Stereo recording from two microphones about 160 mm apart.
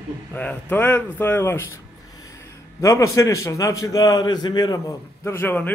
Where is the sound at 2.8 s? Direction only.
20° left (ahead or behind).